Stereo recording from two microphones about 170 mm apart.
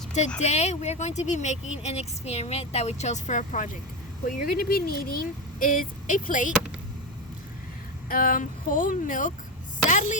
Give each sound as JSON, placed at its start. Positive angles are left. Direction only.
{"t": 0.3, "sound": "speech", "side_deg": 40}
{"t": 4.3, "sound": "speech", "side_deg": 60}
{"t": 8.1, "sound": "speech", "side_deg": 55}